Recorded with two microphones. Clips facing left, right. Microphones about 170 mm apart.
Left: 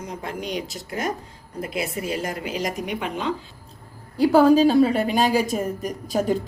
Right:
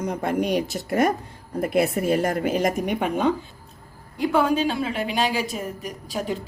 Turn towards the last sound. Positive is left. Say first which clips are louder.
# left 6 dB
turn(degrees=45)  # may be behind; listen again after turning